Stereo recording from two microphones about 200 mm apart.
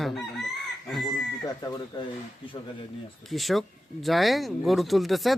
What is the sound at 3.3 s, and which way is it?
Speech, centre (ahead or behind).